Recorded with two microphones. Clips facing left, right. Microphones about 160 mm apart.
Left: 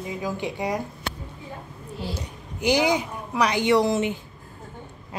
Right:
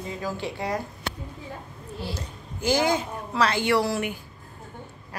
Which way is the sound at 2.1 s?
15° left (ahead or behind).